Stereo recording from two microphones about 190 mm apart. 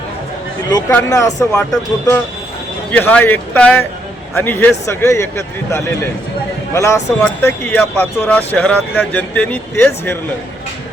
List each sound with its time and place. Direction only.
0.7 s speech: 15° left (ahead or behind)
2.9 s speech: 5° left (ahead or behind)